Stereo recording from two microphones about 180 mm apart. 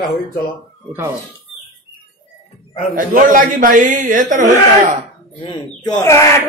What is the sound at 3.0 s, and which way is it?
A man's voice, 50° right (ahead or behind).